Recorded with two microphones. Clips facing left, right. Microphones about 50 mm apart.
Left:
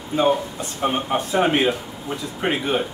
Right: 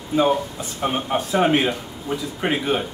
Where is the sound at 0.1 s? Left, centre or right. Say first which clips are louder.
Even; centre.